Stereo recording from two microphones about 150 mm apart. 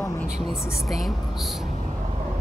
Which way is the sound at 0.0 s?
15° left (ahead or behind).